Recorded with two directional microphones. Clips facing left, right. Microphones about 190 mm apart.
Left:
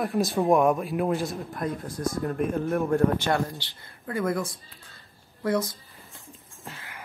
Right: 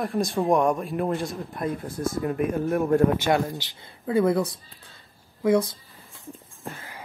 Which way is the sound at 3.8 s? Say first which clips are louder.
Right 6 dB; 25° right (ahead or behind).